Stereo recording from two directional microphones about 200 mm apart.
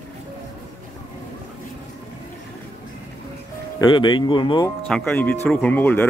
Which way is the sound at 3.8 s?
20° left (ahead or behind).